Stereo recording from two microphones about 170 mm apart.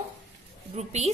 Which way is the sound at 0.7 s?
40° right (ahead or behind).